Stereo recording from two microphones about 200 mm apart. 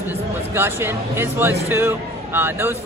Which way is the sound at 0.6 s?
10° right (ahead or behind).